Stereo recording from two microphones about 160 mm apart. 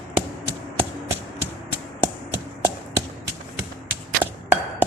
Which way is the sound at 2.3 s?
15° right (ahead or behind).